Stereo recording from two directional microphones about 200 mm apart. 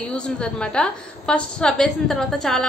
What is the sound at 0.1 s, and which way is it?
A woman's voice, 5° left (ahead or behind).